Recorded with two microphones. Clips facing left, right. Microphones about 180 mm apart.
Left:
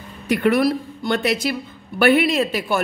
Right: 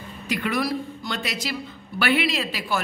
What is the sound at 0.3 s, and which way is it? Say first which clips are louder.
A woman's voice: left 8 dB; 60° left (ahead or behind).